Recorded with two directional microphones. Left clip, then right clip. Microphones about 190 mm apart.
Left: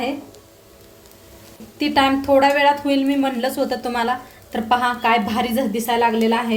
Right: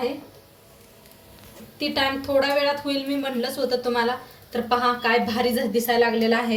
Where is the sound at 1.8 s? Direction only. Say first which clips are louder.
Left 6 dB; 45° left (ahead or behind).